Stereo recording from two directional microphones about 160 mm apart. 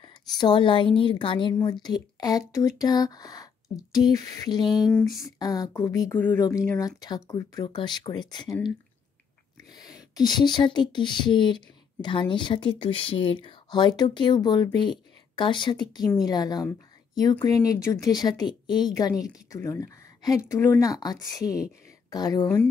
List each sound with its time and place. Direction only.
0.0 s speech: 30° left (ahead or behind); by 6.4 s 15° left (ahead or behind)
7.0 s speech: 25° left (ahead or behind)
9.7 s speech: 25° left (ahead or behind)